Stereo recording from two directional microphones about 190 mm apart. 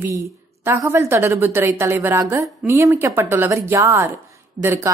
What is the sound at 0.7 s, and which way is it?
A woman's voice, 15° right (ahead or behind).